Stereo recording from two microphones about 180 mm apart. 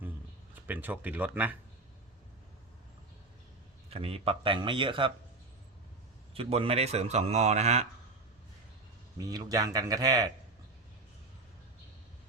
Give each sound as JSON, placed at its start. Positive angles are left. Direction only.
{"t": 0.7, "sound": "speech", "side_deg": -10}
{"t": 3.8, "sound": "speech", "side_deg": -30}
{"t": 6.3, "sound": "speech", "side_deg": -30}
{"t": 9.1, "sound": "speech", "side_deg": -20}